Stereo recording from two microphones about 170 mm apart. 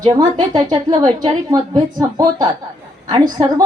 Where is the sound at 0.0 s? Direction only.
25° right (ahead or behind).